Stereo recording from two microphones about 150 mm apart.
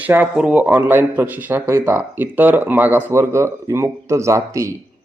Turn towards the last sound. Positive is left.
turn(degrees=-20)  # may be behind; listen again after turning